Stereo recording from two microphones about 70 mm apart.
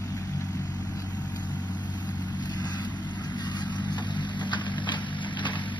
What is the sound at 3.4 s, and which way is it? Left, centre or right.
Vehicle, left.